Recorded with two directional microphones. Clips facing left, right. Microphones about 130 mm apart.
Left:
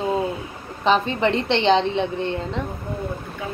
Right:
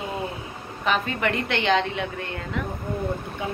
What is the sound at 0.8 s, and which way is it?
A woman's voice, 25° left (ahead or behind).